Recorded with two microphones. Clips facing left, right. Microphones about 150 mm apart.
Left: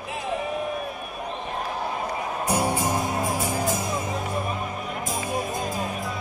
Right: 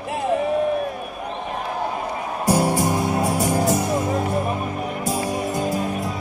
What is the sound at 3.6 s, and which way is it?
Music, 65° right (ahead or behind).